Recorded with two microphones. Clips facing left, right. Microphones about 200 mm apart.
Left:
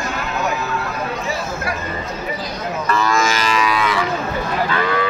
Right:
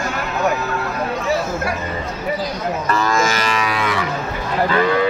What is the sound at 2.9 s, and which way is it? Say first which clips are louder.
Livestock: left 1 dB; 45° right (ahead or behind).